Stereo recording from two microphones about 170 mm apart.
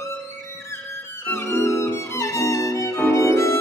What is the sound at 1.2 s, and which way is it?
Music, 15° left (ahead or behind).